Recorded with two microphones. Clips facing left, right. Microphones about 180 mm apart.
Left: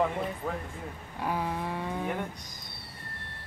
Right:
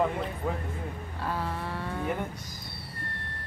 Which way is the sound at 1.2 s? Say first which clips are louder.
Left 2 dB; 15° left (ahead or behind).